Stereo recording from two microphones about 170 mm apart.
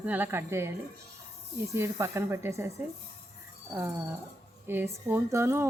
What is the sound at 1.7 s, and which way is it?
Speech, 15° right (ahead or behind).